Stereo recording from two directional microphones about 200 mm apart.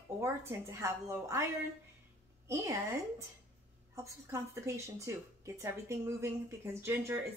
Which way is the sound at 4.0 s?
15° right (ahead or behind).